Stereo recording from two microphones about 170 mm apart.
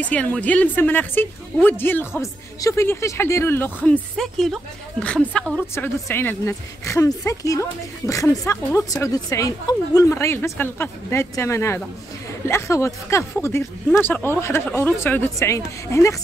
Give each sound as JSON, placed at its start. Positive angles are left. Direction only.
{"t": 0.0, "sound": "a woman's voice", "side_deg": 10}